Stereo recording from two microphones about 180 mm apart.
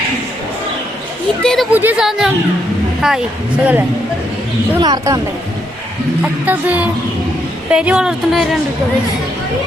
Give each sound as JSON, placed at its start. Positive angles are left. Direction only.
{"t": 1.4, "sound": "speech", "side_deg": 5}
{"t": 1.7, "sound": "speech", "side_deg": -10}
{"t": 4.8, "sound": "speech", "side_deg": -20}
{"t": 6.4, "sound": "music", "side_deg": -10}
{"t": 7.7, "sound": "speech", "side_deg": -5}